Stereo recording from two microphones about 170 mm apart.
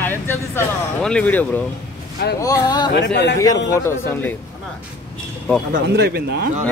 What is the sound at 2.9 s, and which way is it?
Speech, 85° left.